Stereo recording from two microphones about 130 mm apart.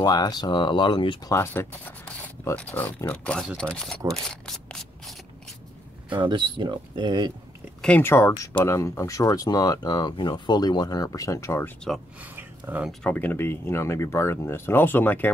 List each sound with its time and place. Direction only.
0.0 s speech: 30° left (ahead or behind)
1.3 s speech: 20° left (ahead or behind); by 4.0 s 5° left (ahead or behind)
4.1 s a sound: 5° left (ahead or behind)
6.0 s speech: 40° right (ahead or behind)
7.8 s speech: 15° left (ahead or behind)
12.2 s a sound: 15° right (ahead or behind)
13.0 s speech: 10° left (ahead or behind)